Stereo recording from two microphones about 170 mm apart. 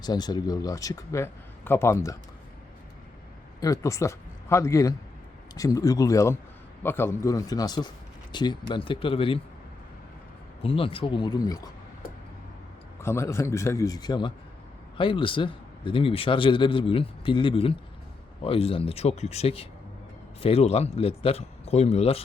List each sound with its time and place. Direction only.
0.0 s a man's voice: 25° left (ahead or behind)
3.6 s a man's voice: 20° left (ahead or behind)
10.6 s a man's voice: 35° left (ahead or behind)
13.0 s a man's voice: 15° left (ahead or behind); by 22.2 s 35° left (ahead or behind)